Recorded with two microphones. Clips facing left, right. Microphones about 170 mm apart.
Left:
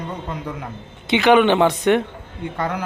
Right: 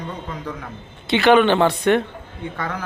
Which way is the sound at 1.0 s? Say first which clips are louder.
Even; 15° left (ahead or behind).